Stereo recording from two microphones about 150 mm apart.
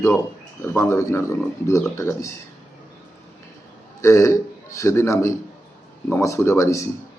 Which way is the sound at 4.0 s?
20° left (ahead or behind).